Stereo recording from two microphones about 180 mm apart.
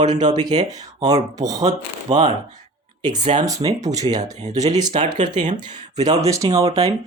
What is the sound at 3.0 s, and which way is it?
Speech, 25° right (ahead or behind).